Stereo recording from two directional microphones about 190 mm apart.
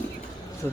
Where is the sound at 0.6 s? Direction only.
10° left (ahead or behind).